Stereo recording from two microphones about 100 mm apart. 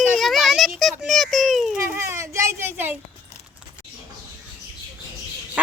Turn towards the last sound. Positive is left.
turn(degrees=-15)  # may be behind; listen again after turning